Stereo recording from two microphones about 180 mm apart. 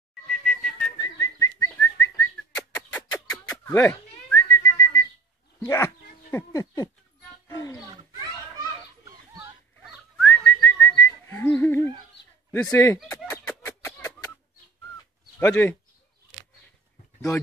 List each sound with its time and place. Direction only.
0.3 s whistle: centre (ahead or behind)
0.9 s whistling: 20° left (ahead or behind)
5.6 s speech: 15° left (ahead or behind)
7.4 s roaring cats: 15° left (ahead or behind)
9.3 s a sound: 20° right (ahead or behind)
10.1 s whistling: 10° left (ahead or behind)
12.7 s fowl: 15° left (ahead or behind)
13.2 s a sound: 5° left (ahead or behind)
15.3 s speech: 10° left (ahead or behind)